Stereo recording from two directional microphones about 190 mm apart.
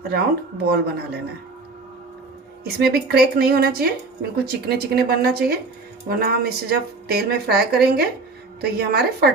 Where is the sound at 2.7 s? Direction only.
55° right (ahead or behind).